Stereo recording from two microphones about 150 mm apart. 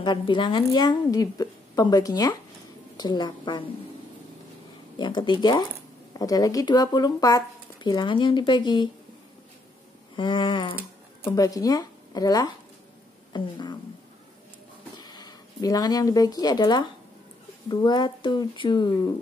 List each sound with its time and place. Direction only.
0.0 s speech: 30° left (ahead or behind)
4.9 s speech: 30° left (ahead or behind)
10.1 s speech: 35° left (ahead or behind)
15.0 s speech: 30° left (ahead or behind)